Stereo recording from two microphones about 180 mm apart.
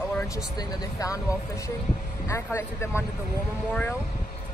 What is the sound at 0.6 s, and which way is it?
Speech, 20° left (ahead or behind).